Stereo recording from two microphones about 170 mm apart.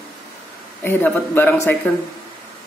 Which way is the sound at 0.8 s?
10° left (ahead or behind).